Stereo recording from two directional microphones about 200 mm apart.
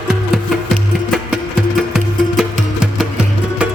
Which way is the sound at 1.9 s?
Centre (ahead or behind).